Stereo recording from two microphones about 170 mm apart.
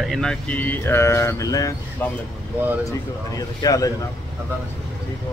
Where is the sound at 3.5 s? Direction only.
20° left (ahead or behind).